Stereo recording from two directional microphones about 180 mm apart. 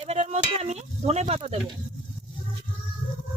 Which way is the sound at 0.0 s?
40° right (ahead or behind).